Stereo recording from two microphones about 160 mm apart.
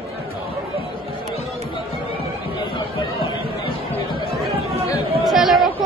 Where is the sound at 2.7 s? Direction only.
30° left (ahead or behind).